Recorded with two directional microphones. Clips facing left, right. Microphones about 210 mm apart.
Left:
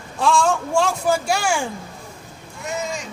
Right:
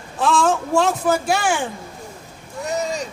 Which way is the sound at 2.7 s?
40° right (ahead or behind).